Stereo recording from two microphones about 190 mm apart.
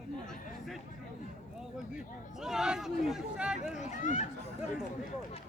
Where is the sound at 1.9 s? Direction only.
Centre (ahead or behind).